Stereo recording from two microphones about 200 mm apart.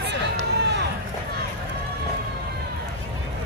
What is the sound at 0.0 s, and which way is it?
Run, 60° right (ahead or behind).